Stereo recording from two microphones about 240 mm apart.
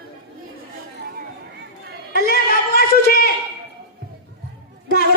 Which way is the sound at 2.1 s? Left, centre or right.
Left.